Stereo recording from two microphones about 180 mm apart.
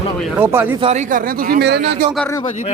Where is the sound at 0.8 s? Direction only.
40° right (ahead or behind); by 1.9 s 65° right (ahead or behind).